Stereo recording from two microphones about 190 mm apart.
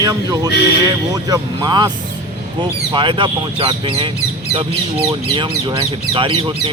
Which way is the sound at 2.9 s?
25° right (ahead or behind).